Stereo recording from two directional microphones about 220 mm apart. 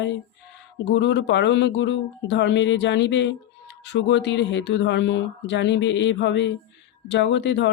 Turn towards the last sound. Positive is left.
turn(degrees=55)  # may be behind; listen again after turning